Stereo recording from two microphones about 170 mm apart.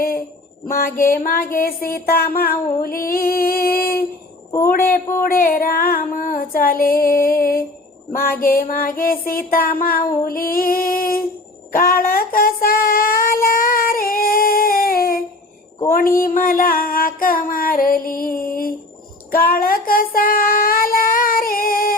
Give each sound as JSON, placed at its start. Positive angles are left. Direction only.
{"t": 0.7, "sound": "music", "side_deg": 55}
{"t": 11.7, "sound": "child singing", "side_deg": 60}
{"t": 15.9, "sound": "music", "side_deg": 55}
{"t": 19.3, "sound": "child singing", "side_deg": 60}